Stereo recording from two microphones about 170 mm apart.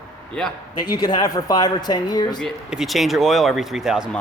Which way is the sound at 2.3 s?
Centre (ahead or behind).